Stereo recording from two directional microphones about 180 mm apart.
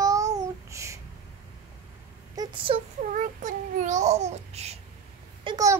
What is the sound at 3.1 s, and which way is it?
A child's voice, 45° right (ahead or behind).